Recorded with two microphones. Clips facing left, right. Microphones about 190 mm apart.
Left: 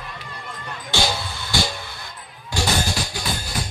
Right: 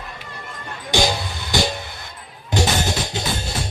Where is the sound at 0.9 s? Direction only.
15° right (ahead or behind).